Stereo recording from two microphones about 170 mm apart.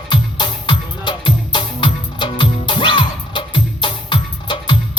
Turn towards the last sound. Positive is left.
turn(degrees=30)  # may be behind; listen again after turning